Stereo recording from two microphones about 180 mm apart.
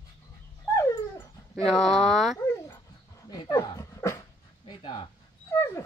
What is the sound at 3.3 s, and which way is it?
Dog, 20° left (ahead or behind).